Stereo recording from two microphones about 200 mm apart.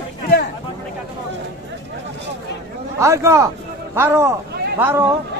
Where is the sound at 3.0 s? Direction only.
15° right (ahead or behind).